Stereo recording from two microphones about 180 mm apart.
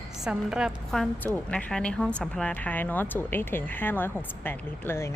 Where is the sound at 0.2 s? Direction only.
5° right (ahead or behind).